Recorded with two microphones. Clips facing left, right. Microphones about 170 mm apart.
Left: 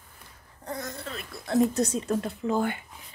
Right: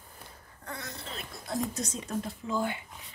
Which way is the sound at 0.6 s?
45° left (ahead or behind).